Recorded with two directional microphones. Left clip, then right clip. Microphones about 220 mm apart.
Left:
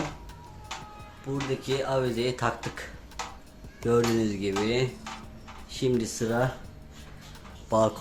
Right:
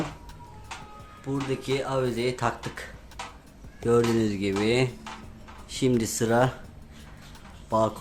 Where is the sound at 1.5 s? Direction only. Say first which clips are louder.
Even; 15° right (ahead or behind).